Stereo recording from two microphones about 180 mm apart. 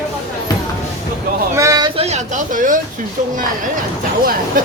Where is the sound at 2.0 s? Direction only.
40° right (ahead or behind).